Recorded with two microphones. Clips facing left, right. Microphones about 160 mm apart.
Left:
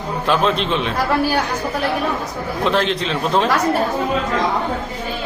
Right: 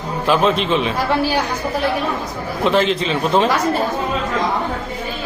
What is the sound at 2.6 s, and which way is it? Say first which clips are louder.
Speech: right 3 dB; centre (ahead or behind).